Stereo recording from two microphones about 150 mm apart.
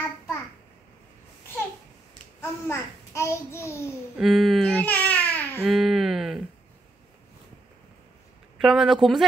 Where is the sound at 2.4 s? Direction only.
20° left (ahead or behind).